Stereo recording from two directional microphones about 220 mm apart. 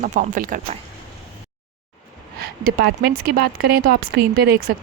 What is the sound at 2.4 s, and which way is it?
Speech, 45° right (ahead or behind).